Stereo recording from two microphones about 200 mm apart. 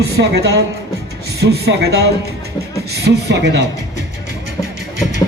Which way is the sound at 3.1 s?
55° right (ahead or behind).